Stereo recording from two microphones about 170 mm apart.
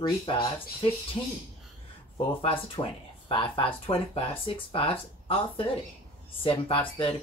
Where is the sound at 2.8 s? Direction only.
20° left (ahead or behind).